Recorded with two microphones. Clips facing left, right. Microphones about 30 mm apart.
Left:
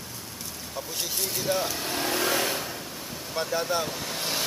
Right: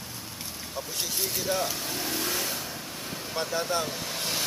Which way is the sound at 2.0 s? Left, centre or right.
Left.